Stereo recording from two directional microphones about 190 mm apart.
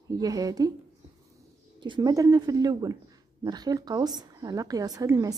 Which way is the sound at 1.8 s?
25° right (ahead or behind).